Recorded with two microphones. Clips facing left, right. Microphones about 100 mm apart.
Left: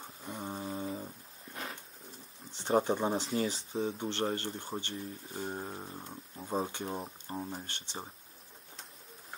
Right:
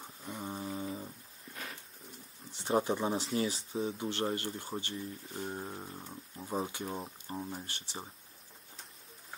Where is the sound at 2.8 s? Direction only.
20° left (ahead or behind).